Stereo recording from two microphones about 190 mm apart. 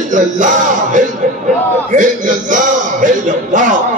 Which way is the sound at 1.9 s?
45° right (ahead or behind).